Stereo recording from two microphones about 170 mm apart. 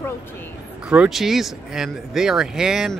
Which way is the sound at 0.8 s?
5° right (ahead or behind).